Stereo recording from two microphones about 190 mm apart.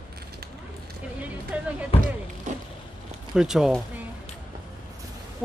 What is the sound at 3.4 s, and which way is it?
Speech, centre (ahead or behind).